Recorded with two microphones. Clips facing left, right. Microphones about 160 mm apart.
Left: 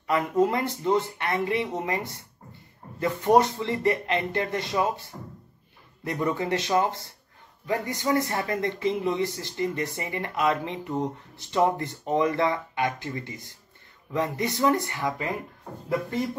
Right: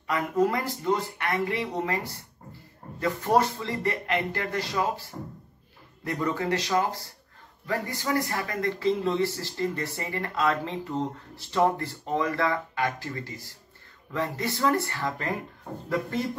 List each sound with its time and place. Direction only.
0.0 s speech: 25° left (ahead or behind)